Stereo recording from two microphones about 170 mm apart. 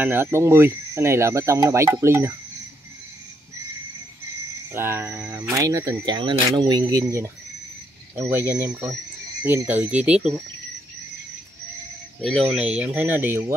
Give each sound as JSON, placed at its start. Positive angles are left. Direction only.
{"t": 0.0, "sound": "speech", "side_deg": -10}
{"t": 4.7, "sound": "speech", "side_deg": -15}
{"t": 12.2, "sound": "speech", "side_deg": 0}